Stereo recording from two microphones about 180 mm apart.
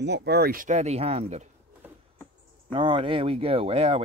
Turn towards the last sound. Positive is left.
turn(degrees=-35)  # may be behind; listen again after turning